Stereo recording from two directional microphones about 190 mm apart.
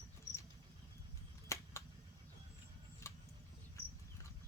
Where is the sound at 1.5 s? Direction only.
15° left (ahead or behind).